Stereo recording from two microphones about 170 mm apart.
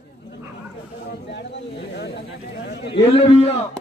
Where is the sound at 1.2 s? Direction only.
90° left.